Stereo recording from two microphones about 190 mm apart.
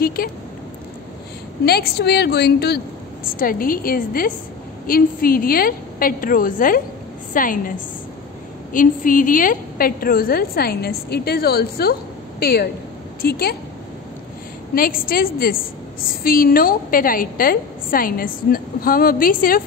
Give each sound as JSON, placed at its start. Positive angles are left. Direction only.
{"t": 0.0, "sound": "speech", "side_deg": 50}
{"t": 1.7, "sound": "a woman's voice", "side_deg": 55}
{"t": 14.8, "sound": "a woman's voice", "side_deg": 50}